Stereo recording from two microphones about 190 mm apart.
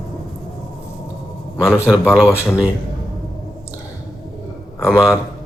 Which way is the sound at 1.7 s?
5° right (ahead or behind).